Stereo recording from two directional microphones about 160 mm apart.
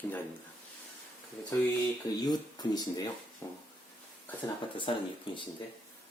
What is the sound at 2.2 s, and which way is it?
Speech, 25° left (ahead or behind).